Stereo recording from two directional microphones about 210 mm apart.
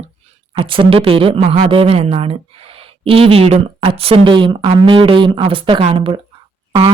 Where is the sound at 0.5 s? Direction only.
25° right (ahead or behind).